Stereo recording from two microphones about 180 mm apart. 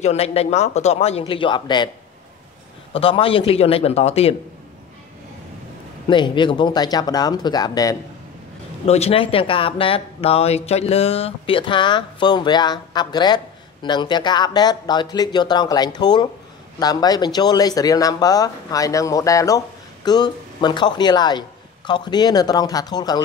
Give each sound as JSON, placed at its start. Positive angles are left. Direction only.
{"t": 0.0, "sound": "speech", "side_deg": 35}
{"t": 2.9, "sound": "speech", "side_deg": 30}
{"t": 6.0, "sound": "speech", "side_deg": 25}
{"t": 8.8, "sound": "speech", "side_deg": 35}